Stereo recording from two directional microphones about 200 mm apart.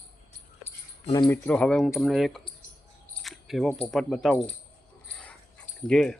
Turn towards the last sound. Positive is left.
turn(degrees=5)  # may be behind; listen again after turning